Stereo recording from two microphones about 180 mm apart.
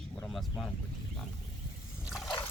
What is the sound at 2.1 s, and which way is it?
Dog, centre (ahead or behind).